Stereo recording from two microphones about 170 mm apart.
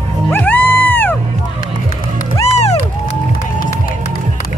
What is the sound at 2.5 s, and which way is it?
Music, 40° left (ahead or behind).